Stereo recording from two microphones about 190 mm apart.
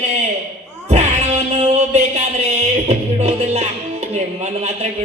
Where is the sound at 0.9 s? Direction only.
35° right (ahead or behind).